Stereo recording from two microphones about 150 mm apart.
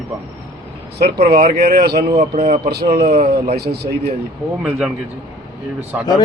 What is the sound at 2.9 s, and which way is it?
Speech, 90° right.